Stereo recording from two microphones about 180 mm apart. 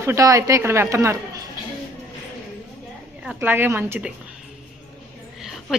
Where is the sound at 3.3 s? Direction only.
10° right (ahead or behind).